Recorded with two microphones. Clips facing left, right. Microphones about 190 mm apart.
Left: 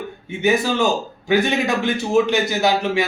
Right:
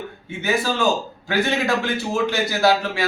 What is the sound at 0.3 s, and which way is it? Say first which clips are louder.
A man's voice: left 4 dB; 20° left (ahead or behind).